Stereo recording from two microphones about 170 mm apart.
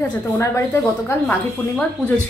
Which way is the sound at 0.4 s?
15° left (ahead or behind).